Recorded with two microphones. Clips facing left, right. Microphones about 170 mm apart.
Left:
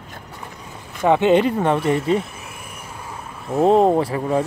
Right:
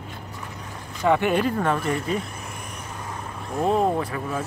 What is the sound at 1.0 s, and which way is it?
Speech, 20° left (ahead or behind).